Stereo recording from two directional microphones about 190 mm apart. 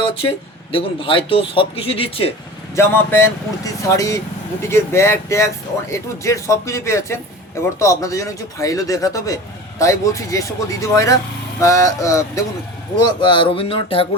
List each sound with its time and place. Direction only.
0.0 s speech: 30° left (ahead or behind)
2.7 s speech: 10° left (ahead or behind); by 14.1 s 30° left (ahead or behind)